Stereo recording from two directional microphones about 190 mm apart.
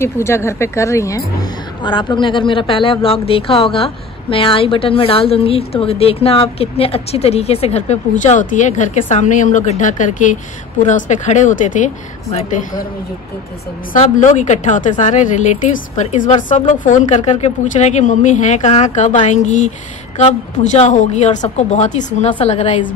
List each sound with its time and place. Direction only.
0.0 s a woman's voice: 15° left (ahead or behind); by 12.6 s 35° left (ahead or behind)
13.9 s a woman's voice: 40° left (ahead or behind)